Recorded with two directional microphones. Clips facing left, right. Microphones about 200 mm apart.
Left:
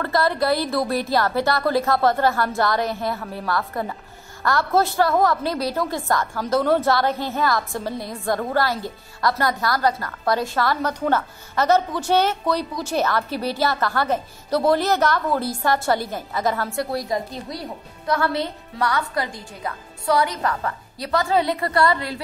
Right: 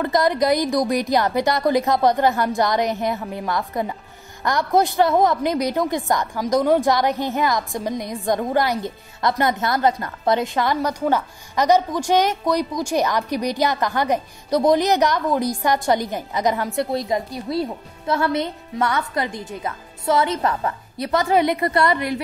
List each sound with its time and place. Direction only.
0.0 s a woman's voice: 15° right (ahead or behind)